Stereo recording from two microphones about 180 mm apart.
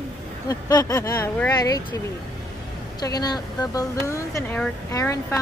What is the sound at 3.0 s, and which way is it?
Speech, 20° left (ahead or behind).